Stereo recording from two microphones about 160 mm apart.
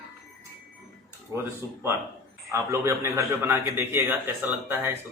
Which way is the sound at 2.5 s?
20° right (ahead or behind).